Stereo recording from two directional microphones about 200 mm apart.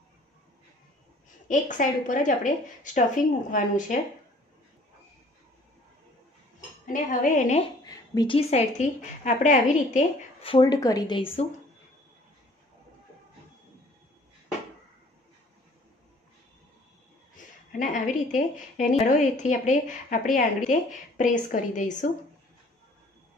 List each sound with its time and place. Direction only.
1.5 s a woman's voice: 40° left (ahead or behind)
6.9 s a woman's voice: 40° left (ahead or behind)
7.8 s a woman's voice: 20° left (ahead or behind)
17.7 s a woman's voice: 40° left (ahead or behind)